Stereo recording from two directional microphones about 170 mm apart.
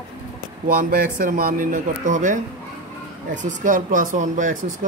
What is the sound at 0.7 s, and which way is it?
Speech, 60° right (ahead or behind).